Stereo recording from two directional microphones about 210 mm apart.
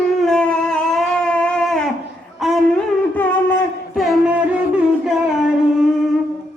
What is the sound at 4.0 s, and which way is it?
Music, 5° right (ahead or behind).